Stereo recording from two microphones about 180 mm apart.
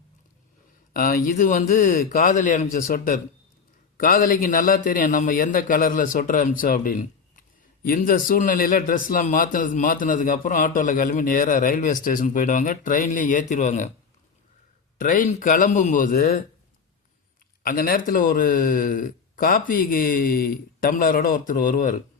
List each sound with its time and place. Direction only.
0.9 s a man's voice: 50° left (ahead or behind)
14.9 s a man's voice: 45° left (ahead or behind)
17.6 s a man's voice: 55° left (ahead or behind)